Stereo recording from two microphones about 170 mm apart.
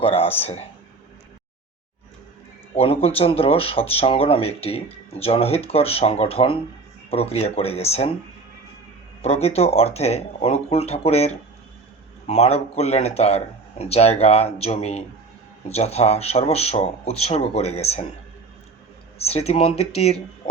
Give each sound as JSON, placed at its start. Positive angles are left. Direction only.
{"t": 0.0, "sound": "speech", "side_deg": 35}
{"t": 2.7, "sound": "speech", "side_deg": 35}
{"t": 9.2, "sound": "speech", "side_deg": 40}
{"t": 12.3, "sound": "speech", "side_deg": 35}
{"t": 19.2, "sound": "speech", "side_deg": 35}